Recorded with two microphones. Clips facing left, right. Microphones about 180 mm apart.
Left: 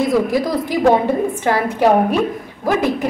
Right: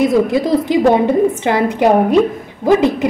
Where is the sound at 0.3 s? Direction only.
25° right (ahead or behind).